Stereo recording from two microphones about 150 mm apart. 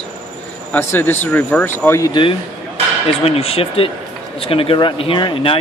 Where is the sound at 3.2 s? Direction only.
40° left (ahead or behind).